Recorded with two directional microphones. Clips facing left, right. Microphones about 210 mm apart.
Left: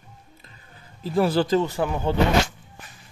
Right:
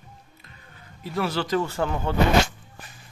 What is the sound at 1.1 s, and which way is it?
Speech, 30° left (ahead or behind).